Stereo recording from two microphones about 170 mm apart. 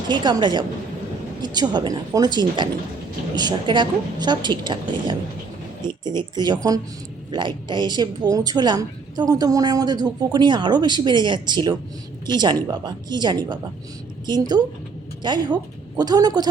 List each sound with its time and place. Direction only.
0.1 s a woman's voice: 25° right (ahead or behind)